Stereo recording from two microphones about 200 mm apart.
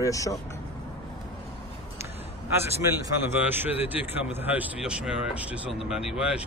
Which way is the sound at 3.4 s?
10° right (ahead or behind).